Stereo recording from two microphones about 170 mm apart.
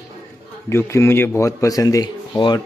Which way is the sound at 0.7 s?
15° left (ahead or behind).